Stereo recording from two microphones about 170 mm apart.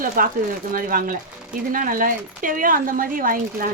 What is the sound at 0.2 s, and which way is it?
A woman's voice, 55° right (ahead or behind).